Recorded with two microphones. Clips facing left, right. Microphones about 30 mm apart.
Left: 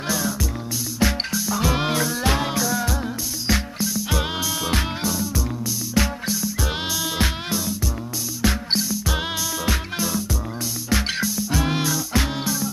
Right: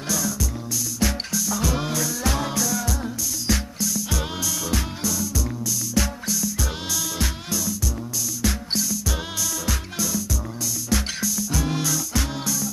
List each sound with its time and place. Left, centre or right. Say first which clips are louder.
0.1 s music: left 1 dB; left